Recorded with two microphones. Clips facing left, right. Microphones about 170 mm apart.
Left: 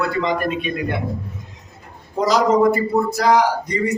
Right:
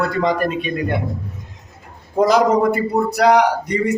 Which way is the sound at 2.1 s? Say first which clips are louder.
Right 2 dB; 55° right (ahead or behind).